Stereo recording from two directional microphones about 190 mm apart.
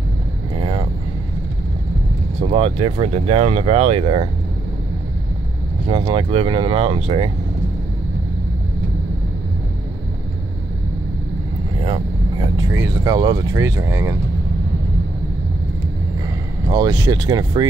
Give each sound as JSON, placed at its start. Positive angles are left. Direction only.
{"t": 0.6, "sound": "vehicle", "side_deg": -30}
{"t": 2.4, "sound": "speech", "side_deg": -30}
{"t": 5.9, "sound": "speech", "side_deg": -30}
{"t": 12.5, "sound": "speech", "side_deg": -15}
{"t": 16.6, "sound": "speech", "side_deg": -20}